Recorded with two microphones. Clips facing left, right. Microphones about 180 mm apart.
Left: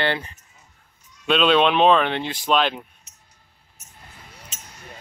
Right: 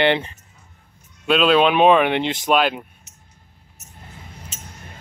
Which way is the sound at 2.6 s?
5° right (ahead or behind).